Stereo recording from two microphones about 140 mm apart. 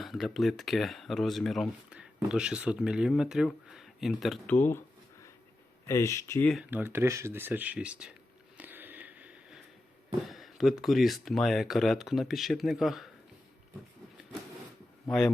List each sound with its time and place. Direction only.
0.0 s a sound: centre (ahead or behind)
0.3 s speech: centre (ahead or behind)
4.4 s speech: 15° left (ahead or behind)
5.8 s speech: 20° left (ahead or behind)
6.7 s speech: 15° right (ahead or behind)
8.5 s a sound: 15° right (ahead or behind)
10.2 s speech: centre (ahead or behind)